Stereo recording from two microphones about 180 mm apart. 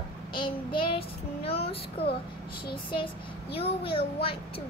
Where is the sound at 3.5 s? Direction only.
30° left (ahead or behind).